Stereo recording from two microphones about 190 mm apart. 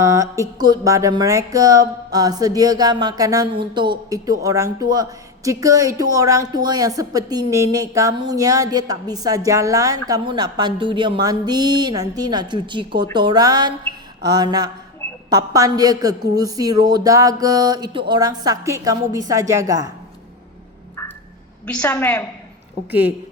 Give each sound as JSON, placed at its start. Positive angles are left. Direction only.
{"t": 0.0, "sound": "a woman's voice", "side_deg": -15}
{"t": 21.7, "sound": "a woman's voice", "side_deg": 5}
{"t": 22.9, "sound": "a woman's voice", "side_deg": -10}